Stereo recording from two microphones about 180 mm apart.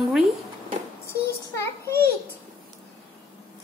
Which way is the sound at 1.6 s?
15° left (ahead or behind).